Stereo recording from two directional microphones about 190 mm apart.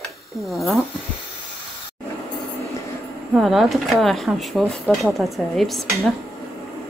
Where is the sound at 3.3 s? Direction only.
Centre (ahead or behind).